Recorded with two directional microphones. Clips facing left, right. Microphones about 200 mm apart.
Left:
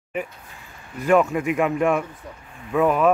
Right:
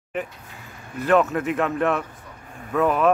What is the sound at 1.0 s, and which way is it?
Speech, 10° left (ahead or behind).